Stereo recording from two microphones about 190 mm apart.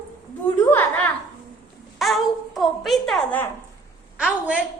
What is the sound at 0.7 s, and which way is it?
A woman's voice, 10° left (ahead or behind).